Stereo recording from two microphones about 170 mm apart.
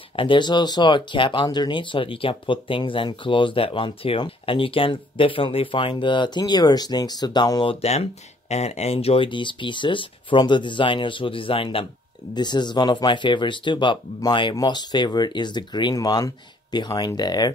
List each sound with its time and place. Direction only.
0.1 s speech: 30° left (ahead or behind)
7.8 s speech: 40° left (ahead or behind)